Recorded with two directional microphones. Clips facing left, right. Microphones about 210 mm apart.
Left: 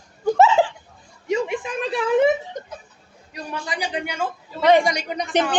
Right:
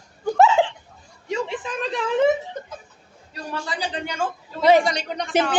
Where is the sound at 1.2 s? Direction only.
20° left (ahead or behind).